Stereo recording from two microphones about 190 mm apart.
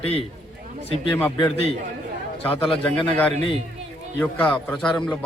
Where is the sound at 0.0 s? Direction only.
30° left (ahead or behind).